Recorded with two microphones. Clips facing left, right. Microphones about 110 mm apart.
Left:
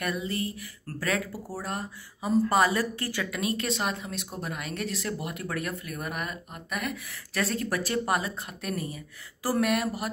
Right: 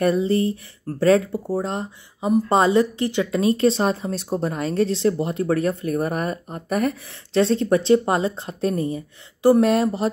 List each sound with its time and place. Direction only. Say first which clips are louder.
0.0 s speech: right 12 dB; 30° right (ahead or behind)